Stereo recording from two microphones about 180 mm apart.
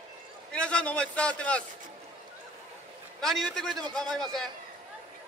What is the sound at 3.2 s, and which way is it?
A man's voice, centre (ahead or behind).